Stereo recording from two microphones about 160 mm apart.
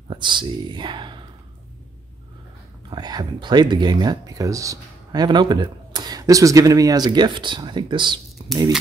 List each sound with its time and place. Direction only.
0.1 s speech: 30° right (ahead or behind)
2.9 s speech: 25° right (ahead or behind)